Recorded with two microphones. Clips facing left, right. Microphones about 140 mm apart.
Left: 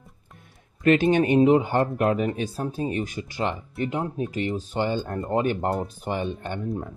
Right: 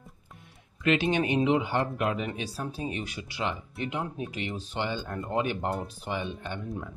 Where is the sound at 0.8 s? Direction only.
45° left (ahead or behind).